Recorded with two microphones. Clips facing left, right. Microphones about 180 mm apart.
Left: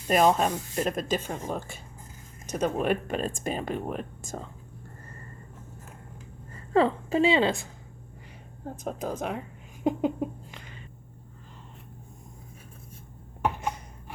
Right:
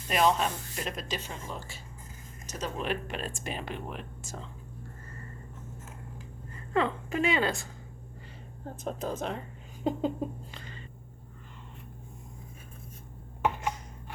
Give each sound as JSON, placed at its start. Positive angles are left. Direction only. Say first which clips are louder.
{"t": 0.1, "sound": "speech", "louder": "left 4 dB", "side_deg": 45}
{"t": 6.7, "sound": "a woman's voice", "louder": "left 6 dB", "side_deg": 30}
{"t": 8.8, "sound": "speech", "louder": "left 1 dB", "side_deg": 10}